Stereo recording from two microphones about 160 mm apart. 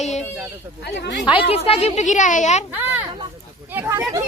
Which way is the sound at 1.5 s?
40° left (ahead or behind).